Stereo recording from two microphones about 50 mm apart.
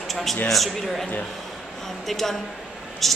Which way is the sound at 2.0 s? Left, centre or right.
Centre.